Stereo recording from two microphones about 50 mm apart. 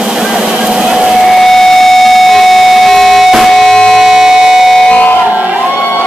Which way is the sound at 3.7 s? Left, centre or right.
Centre.